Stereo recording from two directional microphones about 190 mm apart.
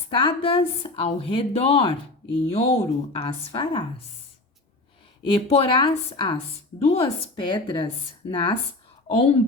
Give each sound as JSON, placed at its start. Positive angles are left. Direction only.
{"t": 0.2, "sound": "speech", "side_deg": 25}
{"t": 5.2, "sound": "speech", "side_deg": 30}